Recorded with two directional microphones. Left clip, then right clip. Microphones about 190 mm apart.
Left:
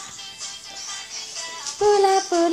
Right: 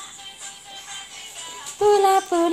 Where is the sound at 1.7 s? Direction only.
10° right (ahead or behind).